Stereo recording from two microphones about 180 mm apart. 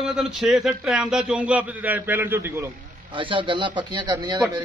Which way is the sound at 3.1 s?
30° right (ahead or behind).